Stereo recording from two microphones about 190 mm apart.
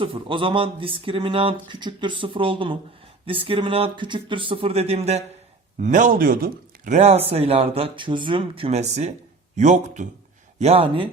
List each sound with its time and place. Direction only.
0.0 s speech: 25° right (ahead or behind)